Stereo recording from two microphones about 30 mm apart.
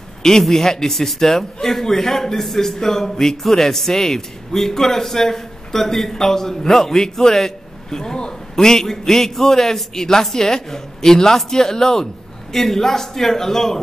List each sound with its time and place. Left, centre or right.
0.4 s a man's voice: centre